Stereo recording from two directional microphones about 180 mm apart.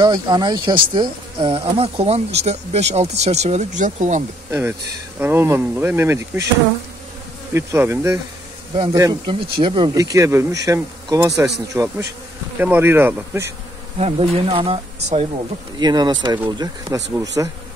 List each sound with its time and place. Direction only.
0.0 s speech: 25° right (ahead or behind); by 4.2 s 40° right (ahead or behind)
4.5 s speech: 10° right (ahead or behind)
7.5 s speech: 15° right (ahead or behind)
13.9 s speech: 35° right (ahead or behind)